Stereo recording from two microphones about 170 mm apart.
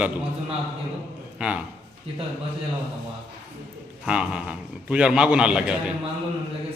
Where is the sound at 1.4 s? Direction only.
5° right (ahead or behind).